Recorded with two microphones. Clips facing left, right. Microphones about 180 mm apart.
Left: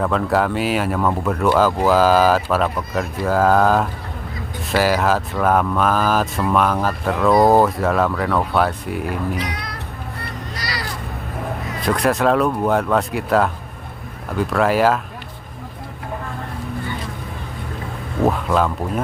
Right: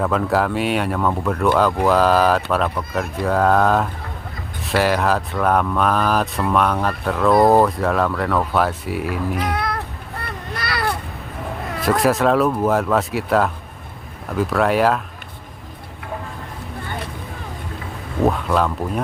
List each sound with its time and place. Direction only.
0.0 s speech: centre (ahead or behind)
9.4 s cat: 55° right (ahead or behind)
10.2 s children playing: 55° right (ahead or behind)
11.8 s speech: centre (ahead or behind)
18.2 s speech: centre (ahead or behind)